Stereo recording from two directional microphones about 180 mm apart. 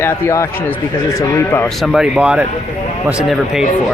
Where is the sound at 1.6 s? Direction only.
Centre (ahead or behind).